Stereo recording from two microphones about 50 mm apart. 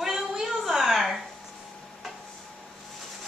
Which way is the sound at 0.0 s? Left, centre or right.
Centre.